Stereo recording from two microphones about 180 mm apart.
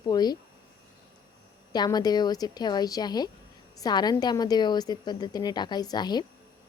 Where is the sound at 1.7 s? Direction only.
20° left (ahead or behind).